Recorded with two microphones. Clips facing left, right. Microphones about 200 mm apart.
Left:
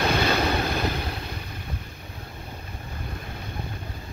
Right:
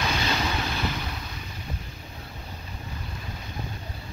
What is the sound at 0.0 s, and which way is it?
Vehicle, 55° left (ahead or behind).